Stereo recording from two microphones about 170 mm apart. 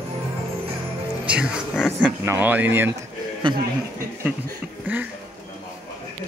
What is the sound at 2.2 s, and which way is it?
Speech, 15° right (ahead or behind).